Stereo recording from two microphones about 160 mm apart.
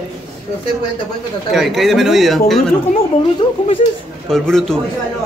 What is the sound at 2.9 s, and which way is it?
Speech, 35° left (ahead or behind).